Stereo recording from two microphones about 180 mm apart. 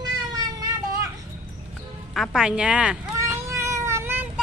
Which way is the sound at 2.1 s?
Centre (ahead or behind).